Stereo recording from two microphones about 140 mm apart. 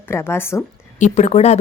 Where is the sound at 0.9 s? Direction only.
55° left (ahead or behind).